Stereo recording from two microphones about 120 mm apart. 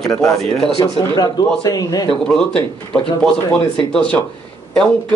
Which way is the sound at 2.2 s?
5° left (ahead or behind).